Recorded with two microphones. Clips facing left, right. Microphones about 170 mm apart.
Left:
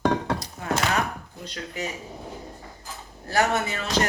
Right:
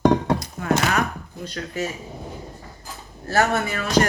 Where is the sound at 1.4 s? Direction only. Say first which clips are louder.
Right 5 dB; 20° left (ahead or behind).